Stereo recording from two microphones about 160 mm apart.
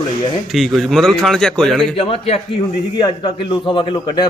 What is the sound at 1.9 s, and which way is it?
A man's voice, 35° left (ahead or behind).